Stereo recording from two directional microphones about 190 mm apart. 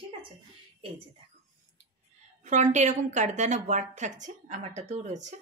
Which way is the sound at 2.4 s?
40° right (ahead or behind).